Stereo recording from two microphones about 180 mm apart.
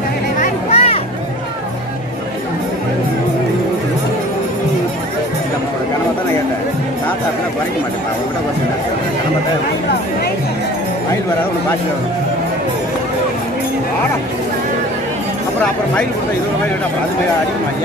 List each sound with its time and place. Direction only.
0.4 s music: 35° left (ahead or behind)